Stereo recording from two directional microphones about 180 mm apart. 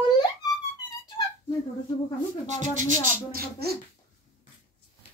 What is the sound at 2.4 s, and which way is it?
Speech, 40° right (ahead or behind).